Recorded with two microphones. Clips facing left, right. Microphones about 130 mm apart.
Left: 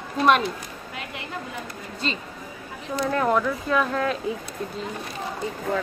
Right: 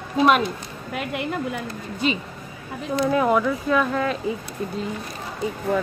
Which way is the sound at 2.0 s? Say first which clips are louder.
Right 6 dB; 10° right (ahead or behind).